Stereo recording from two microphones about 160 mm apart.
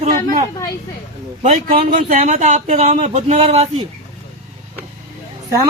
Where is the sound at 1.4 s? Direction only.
50° right (ahead or behind).